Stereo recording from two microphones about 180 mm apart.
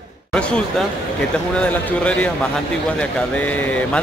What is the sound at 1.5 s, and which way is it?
Speech, 5° left (ahead or behind).